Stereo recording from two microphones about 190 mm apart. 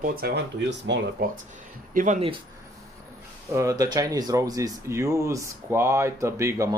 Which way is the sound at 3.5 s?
20° right (ahead or behind).